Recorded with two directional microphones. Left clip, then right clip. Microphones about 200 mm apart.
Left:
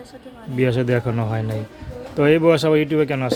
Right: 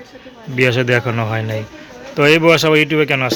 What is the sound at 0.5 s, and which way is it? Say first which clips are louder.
Speech: right 6 dB; 5° left (ahead or behind).